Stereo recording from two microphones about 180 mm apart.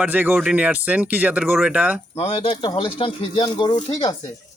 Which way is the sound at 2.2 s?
30° left (ahead or behind).